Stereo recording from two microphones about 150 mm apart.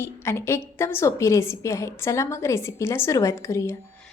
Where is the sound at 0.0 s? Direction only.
15° left (ahead or behind).